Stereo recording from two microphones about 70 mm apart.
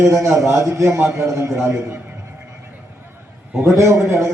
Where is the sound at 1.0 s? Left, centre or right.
Right.